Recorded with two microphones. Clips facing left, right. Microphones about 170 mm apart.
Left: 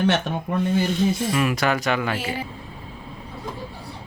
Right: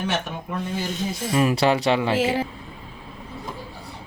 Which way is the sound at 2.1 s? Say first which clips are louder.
Right 7 dB; 90° right.